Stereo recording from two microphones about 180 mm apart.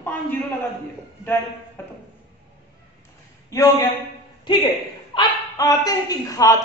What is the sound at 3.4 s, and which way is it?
Speech, 15° left (ahead or behind).